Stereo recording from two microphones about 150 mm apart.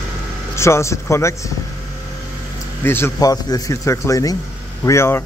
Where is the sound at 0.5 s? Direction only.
20° left (ahead or behind).